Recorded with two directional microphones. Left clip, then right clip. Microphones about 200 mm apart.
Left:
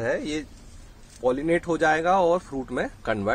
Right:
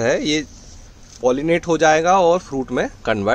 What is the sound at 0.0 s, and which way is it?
A man's voice, 40° right (ahead or behind).